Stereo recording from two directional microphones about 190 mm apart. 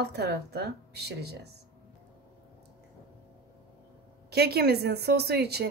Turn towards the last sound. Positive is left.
turn(degrees=-60)  # may be behind; listen again after turning